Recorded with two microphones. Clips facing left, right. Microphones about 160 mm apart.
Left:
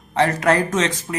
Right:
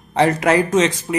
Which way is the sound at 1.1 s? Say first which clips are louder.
Right 6 dB; 20° right (ahead or behind).